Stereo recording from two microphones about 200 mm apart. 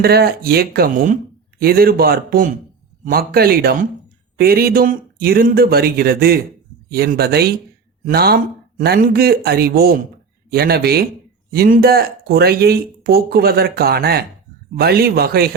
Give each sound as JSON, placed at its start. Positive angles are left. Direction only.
{"t": 0.0, "sound": "speech", "side_deg": -50}